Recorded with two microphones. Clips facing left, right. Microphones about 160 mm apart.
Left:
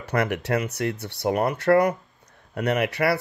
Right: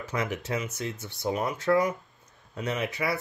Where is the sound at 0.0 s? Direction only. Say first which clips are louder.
Left 6 dB; 65° left (ahead or behind).